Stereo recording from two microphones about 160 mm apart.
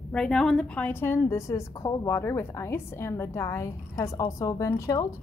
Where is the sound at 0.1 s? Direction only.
5° left (ahead or behind).